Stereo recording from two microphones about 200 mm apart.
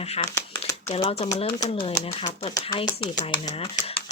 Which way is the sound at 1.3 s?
20° left (ahead or behind).